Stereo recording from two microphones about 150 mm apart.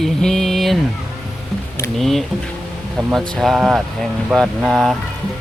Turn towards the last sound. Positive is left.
turn(degrees=0)  # may be behind; listen again after turning